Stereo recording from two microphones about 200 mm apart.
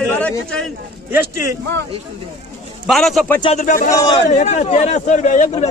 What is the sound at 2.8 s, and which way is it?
Speech, centre (ahead or behind).